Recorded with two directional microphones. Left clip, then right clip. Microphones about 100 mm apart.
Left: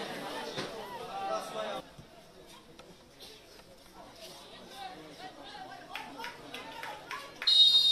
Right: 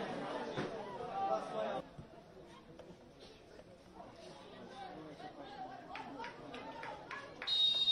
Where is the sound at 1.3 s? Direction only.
10° left (ahead or behind).